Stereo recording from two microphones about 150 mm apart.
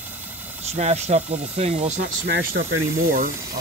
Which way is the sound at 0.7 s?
50° right (ahead or behind).